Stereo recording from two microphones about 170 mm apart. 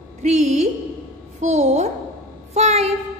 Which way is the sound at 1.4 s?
40° right (ahead or behind).